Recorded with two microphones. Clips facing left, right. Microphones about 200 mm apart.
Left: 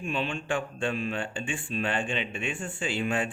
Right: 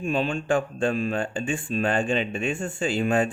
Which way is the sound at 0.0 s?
40° right (ahead or behind).